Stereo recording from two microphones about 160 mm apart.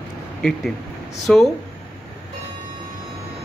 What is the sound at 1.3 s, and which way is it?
Speech, 5° left (ahead or behind).